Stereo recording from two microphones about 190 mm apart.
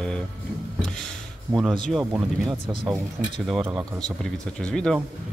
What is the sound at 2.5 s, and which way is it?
Speech, 25° right (ahead or behind).